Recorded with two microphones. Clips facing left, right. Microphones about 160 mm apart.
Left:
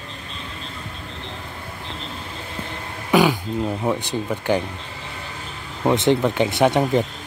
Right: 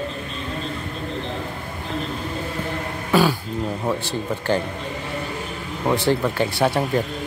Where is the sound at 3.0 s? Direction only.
15° left (ahead or behind).